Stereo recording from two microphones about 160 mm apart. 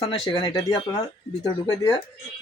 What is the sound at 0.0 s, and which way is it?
Speech, 30° left (ahead or behind).